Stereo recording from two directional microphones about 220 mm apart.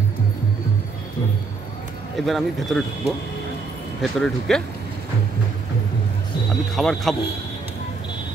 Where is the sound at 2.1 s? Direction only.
Centre (ahead or behind).